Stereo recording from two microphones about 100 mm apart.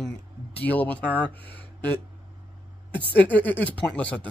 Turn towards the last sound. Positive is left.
turn(degrees=15)  # may be behind; listen again after turning